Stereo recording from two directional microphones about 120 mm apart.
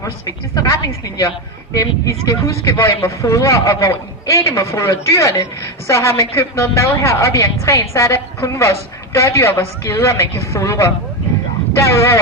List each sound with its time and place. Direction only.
0.0 s speech: 25° left (ahead or behind)